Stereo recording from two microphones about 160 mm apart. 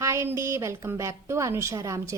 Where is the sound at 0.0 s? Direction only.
15° right (ahead or behind).